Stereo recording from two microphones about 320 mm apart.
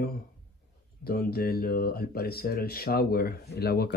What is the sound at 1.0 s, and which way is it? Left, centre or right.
Speech, left.